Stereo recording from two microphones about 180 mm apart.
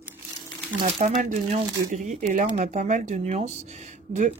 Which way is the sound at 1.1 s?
40° right (ahead or behind).